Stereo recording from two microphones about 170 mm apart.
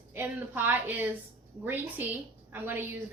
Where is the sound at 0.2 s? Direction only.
10° right (ahead or behind).